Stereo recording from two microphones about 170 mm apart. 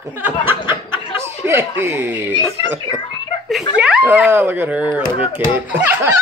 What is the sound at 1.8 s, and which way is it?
Speech, 10° right (ahead or behind).